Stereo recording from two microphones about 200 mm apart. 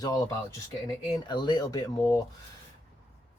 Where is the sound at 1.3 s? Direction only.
20° left (ahead or behind).